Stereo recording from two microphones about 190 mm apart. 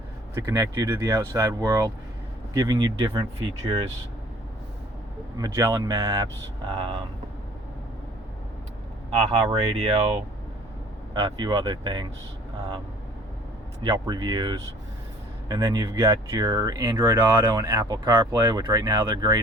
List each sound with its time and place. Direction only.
0.3 s speech: 15° right (ahead or behind)
5.4 s speech: 20° right (ahead or behind)
9.0 s speech: 30° right (ahead or behind)
13.8 s speech: 20° right (ahead or behind)